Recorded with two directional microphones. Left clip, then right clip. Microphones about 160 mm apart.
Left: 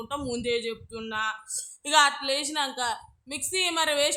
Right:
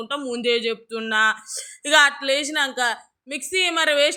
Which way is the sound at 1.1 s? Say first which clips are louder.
Right 11 dB; 30° right (ahead or behind).